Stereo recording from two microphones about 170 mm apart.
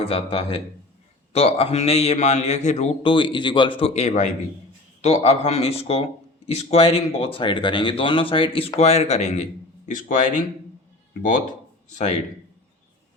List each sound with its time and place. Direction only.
0.0 s a man's voice: 35° left (ahead or behind)